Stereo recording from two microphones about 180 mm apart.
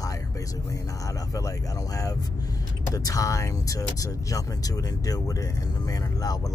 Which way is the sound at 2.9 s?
20° left (ahead or behind).